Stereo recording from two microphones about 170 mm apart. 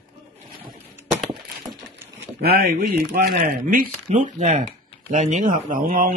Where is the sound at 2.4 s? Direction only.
65° right (ahead or behind).